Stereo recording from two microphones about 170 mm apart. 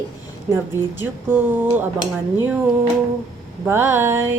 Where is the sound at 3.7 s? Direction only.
15° right (ahead or behind).